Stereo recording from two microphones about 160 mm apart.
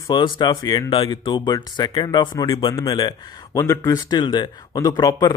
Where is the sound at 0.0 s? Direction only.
30° left (ahead or behind).